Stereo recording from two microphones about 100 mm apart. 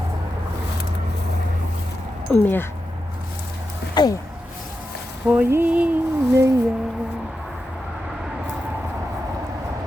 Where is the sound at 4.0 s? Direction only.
45° left (ahead or behind).